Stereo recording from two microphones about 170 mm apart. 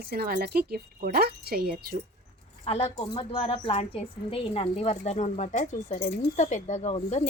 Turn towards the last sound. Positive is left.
turn(degrees=45)  # may be behind; listen again after turning